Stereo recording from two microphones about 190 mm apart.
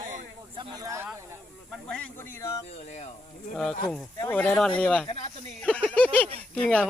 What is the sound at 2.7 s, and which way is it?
Speech, 35° left (ahead or behind).